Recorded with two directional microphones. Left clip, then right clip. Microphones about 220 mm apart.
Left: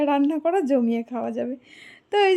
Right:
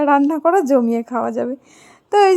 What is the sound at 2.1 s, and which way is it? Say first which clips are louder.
Speech: right 7 dB; 20° right (ahead or behind).